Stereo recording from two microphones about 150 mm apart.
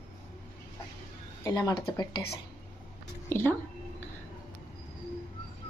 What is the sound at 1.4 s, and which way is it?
Speech, 25° left (ahead or behind).